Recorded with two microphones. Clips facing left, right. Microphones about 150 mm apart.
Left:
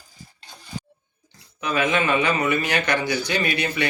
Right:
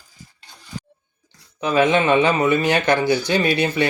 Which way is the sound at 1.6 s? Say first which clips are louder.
Right 5 dB; 30° right (ahead or behind).